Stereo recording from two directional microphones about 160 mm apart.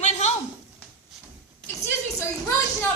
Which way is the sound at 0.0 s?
45° left (ahead or behind).